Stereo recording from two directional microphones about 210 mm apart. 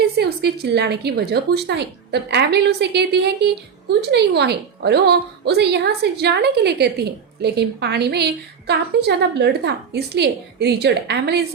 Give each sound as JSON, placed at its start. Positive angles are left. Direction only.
{"t": 0.0, "sound": "a woman's voice", "side_deg": -50}